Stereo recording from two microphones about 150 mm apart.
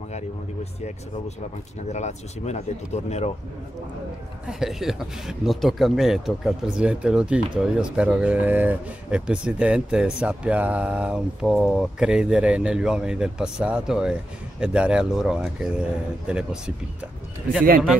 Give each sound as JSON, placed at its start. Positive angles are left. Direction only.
{"t": 1.9, "sound": "speech", "side_deg": 50}
{"t": 4.5, "sound": "speech", "side_deg": -5}